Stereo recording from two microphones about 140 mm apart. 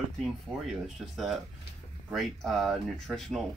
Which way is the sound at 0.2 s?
Centre (ahead or behind).